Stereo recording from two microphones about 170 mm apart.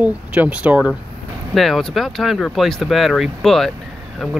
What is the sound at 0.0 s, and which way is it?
Speech, 10° right (ahead or behind).